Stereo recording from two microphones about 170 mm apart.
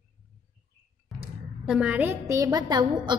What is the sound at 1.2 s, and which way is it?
A woman's voice, 5° right (ahead or behind).